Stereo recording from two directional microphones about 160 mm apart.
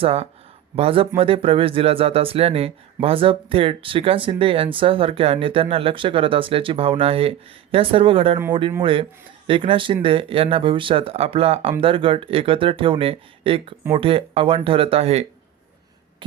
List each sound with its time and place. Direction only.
0.0 s speech: 40° right (ahead or behind)